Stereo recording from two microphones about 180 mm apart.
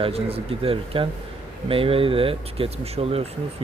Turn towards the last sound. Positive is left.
turn(degrees=-35)  # may be behind; listen again after turning